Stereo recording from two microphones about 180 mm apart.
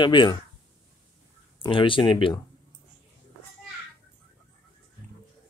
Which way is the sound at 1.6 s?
30° left (ahead or behind).